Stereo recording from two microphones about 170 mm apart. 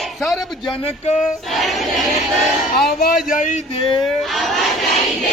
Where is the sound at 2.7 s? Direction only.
60° left (ahead or behind).